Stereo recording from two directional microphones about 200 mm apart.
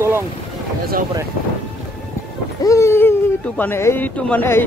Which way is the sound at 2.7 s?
15° left (ahead or behind).